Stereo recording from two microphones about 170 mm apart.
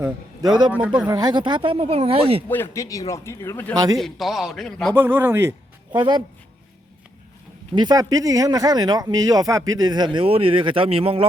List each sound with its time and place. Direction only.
0.0 s a man's voice: 25° right (ahead or behind)
0.7 s speech: 5° right (ahead or behind)
1.0 s speech: 25° right (ahead or behind)
2.5 s a man's voice: 15° left (ahead or behind)
3.9 s a man's voice: centre (ahead or behind)
4.9 s speech: 15° right (ahead or behind)
5.9 s speech: 25° right (ahead or behind)
7.8 s speech: 20° right (ahead or behind)